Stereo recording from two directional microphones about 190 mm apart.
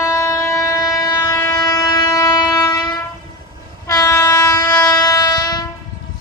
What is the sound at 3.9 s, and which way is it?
Train, 15° left (ahead or behind).